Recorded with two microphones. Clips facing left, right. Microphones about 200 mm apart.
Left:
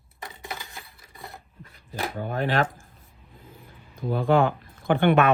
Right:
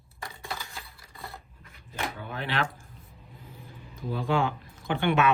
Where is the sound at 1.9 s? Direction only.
40° left (ahead or behind).